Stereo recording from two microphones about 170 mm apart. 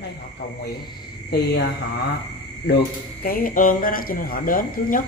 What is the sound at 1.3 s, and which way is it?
Speech, 75° left (ahead or behind).